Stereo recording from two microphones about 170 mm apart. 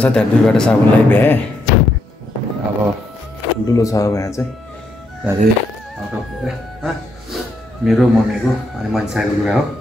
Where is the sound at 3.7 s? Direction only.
20° left (ahead or behind).